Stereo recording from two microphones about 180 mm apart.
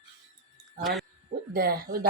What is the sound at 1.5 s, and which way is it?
Speech, 60° right (ahead or behind).